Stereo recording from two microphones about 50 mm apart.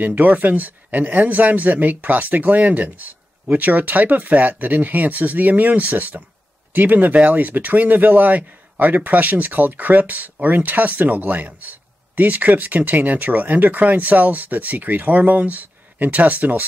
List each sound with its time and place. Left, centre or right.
0.0 s speech: right